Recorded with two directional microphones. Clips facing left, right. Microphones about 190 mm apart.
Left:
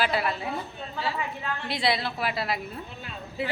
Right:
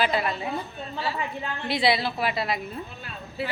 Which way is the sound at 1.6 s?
Centre (ahead or behind).